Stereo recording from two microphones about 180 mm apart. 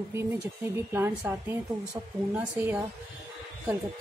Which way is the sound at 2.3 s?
10° right (ahead or behind).